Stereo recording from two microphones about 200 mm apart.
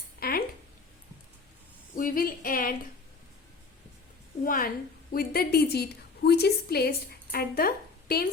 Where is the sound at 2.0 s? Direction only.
45° left (ahead or behind).